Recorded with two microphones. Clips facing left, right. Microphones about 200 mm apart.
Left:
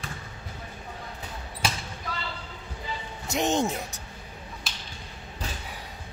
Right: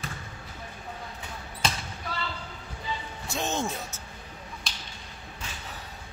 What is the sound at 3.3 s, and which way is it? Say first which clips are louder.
Speech: left 5 dB; 20° left (ahead or behind).